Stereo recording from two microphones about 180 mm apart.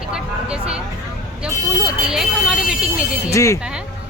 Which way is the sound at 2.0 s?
5° right (ahead or behind).